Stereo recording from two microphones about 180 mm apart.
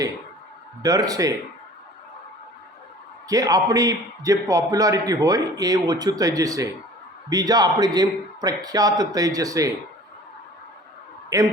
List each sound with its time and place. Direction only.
0.8 s a man's voice: 20° right (ahead or behind)
3.2 s a man's voice: 20° right (ahead or behind)
11.3 s a man's voice: 20° right (ahead or behind)